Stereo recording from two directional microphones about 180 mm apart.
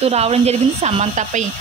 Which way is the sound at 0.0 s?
35° right (ahead or behind).